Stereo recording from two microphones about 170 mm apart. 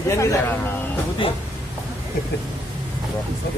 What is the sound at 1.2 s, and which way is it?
Speech, 30° left (ahead or behind).